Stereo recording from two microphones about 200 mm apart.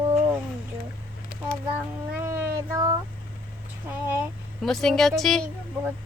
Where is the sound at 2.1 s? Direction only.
10° right (ahead or behind).